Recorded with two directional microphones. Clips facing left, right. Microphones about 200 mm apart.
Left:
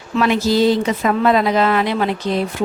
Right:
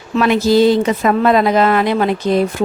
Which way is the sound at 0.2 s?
55° right (ahead or behind).